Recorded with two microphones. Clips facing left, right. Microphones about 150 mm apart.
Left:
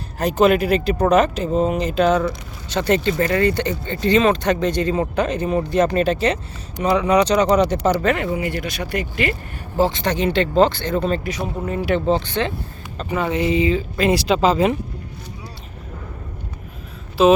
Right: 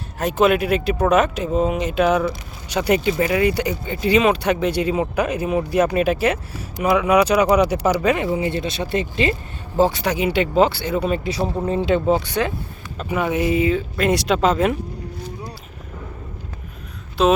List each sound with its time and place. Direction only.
0.2 s speech: centre (ahead or behind); by 9.3 s 25° right (ahead or behind)
9.7 s speech: 10° right (ahead or behind)
11.2 s speech: 30° right (ahead or behind)
11.9 s speech: 10° right (ahead or behind)
17.2 s speech: 5° left (ahead or behind)